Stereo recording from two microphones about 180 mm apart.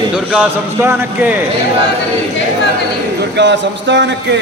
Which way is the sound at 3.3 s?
75° right (ahead or behind).